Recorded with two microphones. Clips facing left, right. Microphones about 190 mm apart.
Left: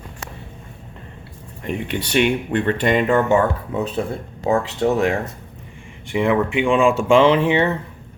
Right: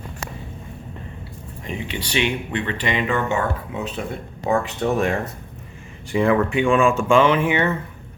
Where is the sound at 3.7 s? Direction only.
35° left (ahead or behind).